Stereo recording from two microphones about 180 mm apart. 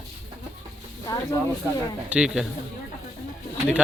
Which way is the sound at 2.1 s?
5° right (ahead or behind).